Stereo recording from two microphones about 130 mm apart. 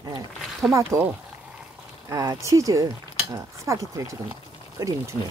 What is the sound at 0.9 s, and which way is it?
Speech, 25° right (ahead or behind).